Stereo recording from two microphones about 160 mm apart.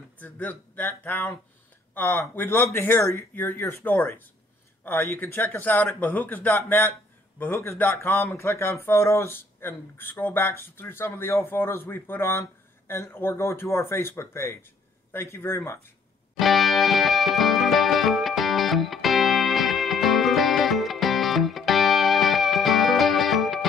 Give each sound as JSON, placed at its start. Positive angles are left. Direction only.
{"t": 0.2, "sound": "speech", "side_deg": 10}
{"t": 16.3, "sound": "music", "side_deg": 0}